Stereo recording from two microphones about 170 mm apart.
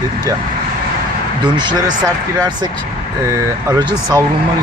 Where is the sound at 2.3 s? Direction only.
20° right (ahead or behind).